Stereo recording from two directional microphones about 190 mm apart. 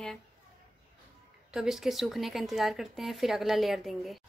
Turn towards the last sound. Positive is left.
turn(degrees=0)  # may be behind; listen again after turning